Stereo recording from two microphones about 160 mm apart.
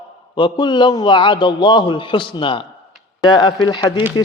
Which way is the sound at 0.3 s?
30° left (ahead or behind).